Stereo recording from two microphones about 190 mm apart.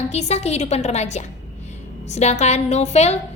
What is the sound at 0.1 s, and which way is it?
A woman's voice, 35° left (ahead or behind).